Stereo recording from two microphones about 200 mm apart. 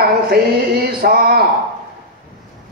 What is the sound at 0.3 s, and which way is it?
A man's voice, 50° right (ahead or behind).